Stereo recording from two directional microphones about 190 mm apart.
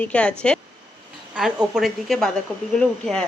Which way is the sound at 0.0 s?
5° left (ahead or behind).